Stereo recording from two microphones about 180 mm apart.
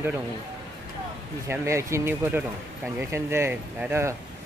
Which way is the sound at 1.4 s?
15° right (ahead or behind).